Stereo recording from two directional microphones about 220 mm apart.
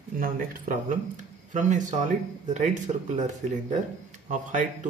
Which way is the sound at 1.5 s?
35° right (ahead or behind).